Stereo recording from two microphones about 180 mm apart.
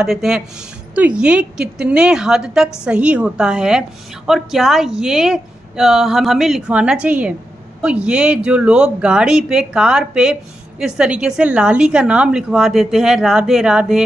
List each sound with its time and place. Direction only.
0.0 s a woman's voice: centre (ahead or behind)